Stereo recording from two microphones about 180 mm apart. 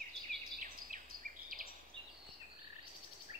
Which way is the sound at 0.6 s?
50° right (ahead or behind).